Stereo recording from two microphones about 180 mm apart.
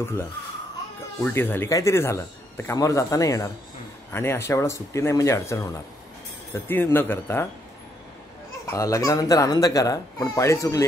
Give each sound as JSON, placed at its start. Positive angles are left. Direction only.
{"t": 1.2, "sound": "a man's voice", "side_deg": 10}
{"t": 8.6, "sound": "speech", "side_deg": 20}